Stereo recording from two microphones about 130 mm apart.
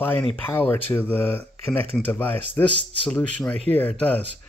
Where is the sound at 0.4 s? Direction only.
15° left (ahead or behind).